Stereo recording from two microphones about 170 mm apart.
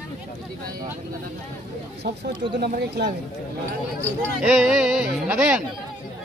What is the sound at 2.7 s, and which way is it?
Speech, 75° right (ahead or behind).